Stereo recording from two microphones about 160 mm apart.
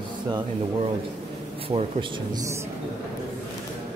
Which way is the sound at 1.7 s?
40° right (ahead or behind).